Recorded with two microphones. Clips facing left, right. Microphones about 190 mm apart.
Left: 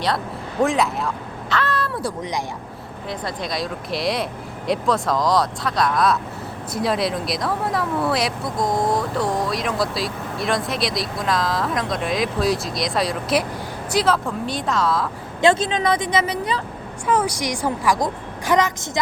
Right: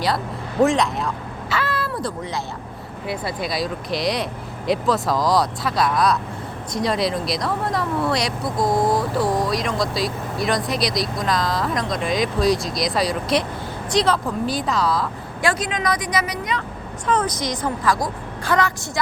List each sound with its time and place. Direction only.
0.6 s speech: centre (ahead or behind)
2.0 s a woman's voice: 15° left (ahead or behind)
3.1 s speech: 5° right (ahead or behind)
15.4 s speech: 25° left (ahead or behind)
17.1 s a woman's voice: 10° left (ahead or behind)